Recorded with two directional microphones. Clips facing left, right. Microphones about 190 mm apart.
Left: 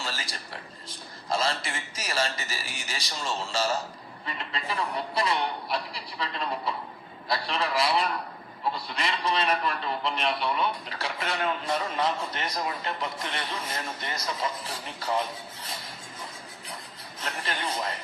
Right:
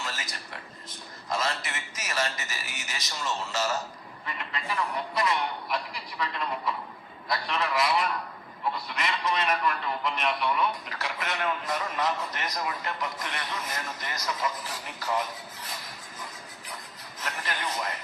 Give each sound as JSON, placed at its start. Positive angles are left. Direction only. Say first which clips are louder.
{"t": 0.0, "sound": "a sound", "louder": "left 1 dB", "side_deg": 30}
{"t": 8.7, "sound": "a man's voice", "louder": "even", "side_deg": 30}
{"t": 17.2, "sound": "a man's voice", "louder": "left 1 dB", "side_deg": 30}